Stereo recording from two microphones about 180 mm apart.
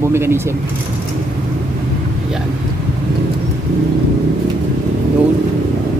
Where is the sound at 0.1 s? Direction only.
15° right (ahead or behind).